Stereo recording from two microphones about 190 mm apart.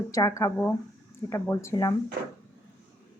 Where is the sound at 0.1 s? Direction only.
15° left (ahead or behind).